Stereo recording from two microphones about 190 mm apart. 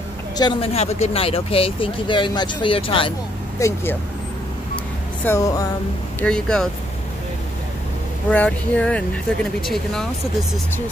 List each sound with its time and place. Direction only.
0.4 s speech: 25° left (ahead or behind)
3.5 s music: 15° left (ahead or behind)
5.2 s music: 15° left (ahead or behind)
6.2 s speech: 5° left (ahead or behind)
8.3 s speech: 5° left (ahead or behind)